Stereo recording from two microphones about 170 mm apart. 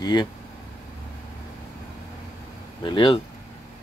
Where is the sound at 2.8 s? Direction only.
30° left (ahead or behind).